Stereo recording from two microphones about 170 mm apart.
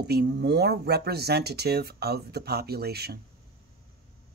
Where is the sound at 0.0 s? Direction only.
70° right (ahead or behind).